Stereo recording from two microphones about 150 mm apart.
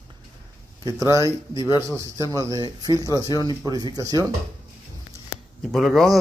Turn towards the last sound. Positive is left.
turn(degrees=0)  # may be behind; listen again after turning